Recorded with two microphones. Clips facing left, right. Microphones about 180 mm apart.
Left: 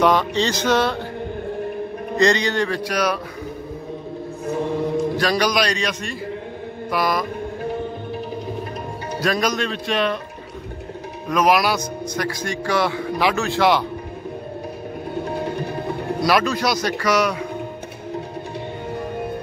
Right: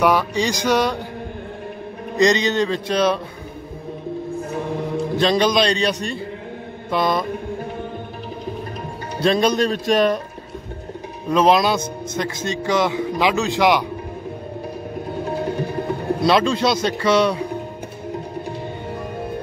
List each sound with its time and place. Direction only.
0.0 s music: 10° right (ahead or behind)
2.1 s a man's voice: 20° right (ahead or behind)
5.1 s a man's voice: 25° right (ahead or behind)
9.2 s a man's voice: 30° right (ahead or behind)
9.7 s a man's voice: 45° right (ahead or behind)
11.2 s a man's voice: 25° right (ahead or behind)
16.2 s a man's voice: 25° right (ahead or behind)